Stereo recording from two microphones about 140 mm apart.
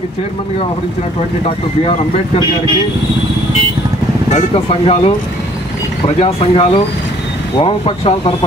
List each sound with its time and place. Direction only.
4.3 s speech: 50° left (ahead or behind)
6.1 s speech: 40° left (ahead or behind)